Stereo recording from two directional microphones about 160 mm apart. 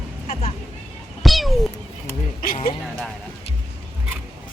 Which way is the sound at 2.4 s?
65° left (ahead or behind).